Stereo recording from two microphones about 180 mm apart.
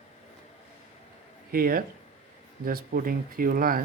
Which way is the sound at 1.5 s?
55° right (ahead or behind).